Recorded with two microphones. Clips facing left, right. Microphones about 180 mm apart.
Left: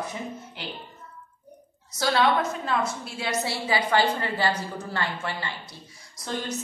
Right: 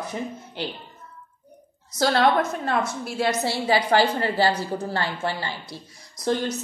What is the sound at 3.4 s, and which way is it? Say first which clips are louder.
A woman's voice: right 4 dB; 35° right (ahead or behind).